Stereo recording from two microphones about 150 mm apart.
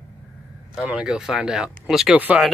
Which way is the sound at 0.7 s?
5° right (ahead or behind).